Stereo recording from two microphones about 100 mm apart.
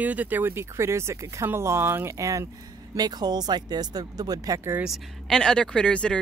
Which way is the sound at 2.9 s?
40° right (ahead or behind).